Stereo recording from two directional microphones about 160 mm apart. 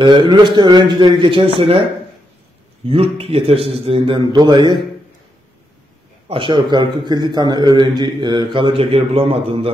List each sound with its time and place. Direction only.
0.0 s a man's voice: 30° right (ahead or behind)
2.9 s a man's voice: 35° right (ahead or behind)
6.2 s a man's voice: 30° right (ahead or behind)